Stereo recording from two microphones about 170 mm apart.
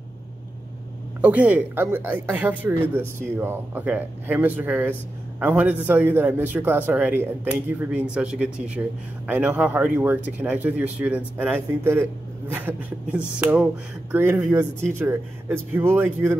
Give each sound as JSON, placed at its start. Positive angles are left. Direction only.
{"t": 1.2, "sound": "speech", "side_deg": -10}